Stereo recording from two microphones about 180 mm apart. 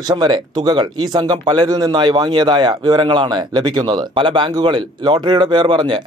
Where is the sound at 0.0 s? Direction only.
25° right (ahead or behind).